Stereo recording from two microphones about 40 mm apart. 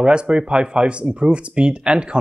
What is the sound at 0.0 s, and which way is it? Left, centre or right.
Speech, right.